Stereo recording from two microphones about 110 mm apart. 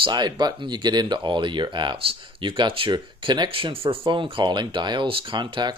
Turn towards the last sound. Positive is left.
turn(degrees=-45)  # may be behind; listen again after turning